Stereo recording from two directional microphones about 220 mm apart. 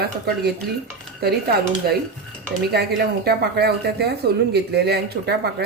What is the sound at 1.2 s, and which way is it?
Speech, 45° right (ahead or behind).